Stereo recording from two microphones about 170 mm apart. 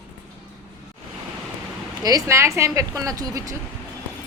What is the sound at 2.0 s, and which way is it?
A woman's voice, 20° right (ahead or behind).